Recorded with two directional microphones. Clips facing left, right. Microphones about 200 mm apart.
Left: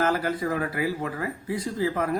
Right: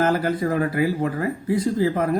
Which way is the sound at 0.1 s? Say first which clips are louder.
Right 4 dB; 40° right (ahead or behind).